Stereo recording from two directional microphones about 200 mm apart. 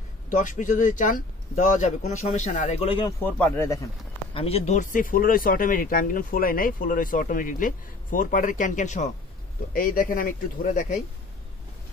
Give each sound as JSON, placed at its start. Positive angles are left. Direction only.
{"t": 0.3, "sound": "speech", "side_deg": 40}
{"t": 3.2, "sound": "speech", "side_deg": 10}
{"t": 4.3, "sound": "speech", "side_deg": 30}